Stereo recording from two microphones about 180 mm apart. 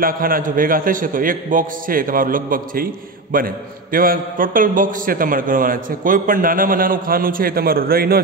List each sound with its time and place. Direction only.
0.0 s a man's voice: 50° right (ahead or behind)